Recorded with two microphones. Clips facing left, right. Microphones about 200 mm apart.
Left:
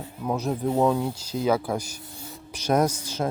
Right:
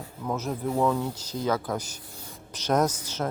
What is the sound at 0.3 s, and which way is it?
Speech, 15° left (ahead or behind).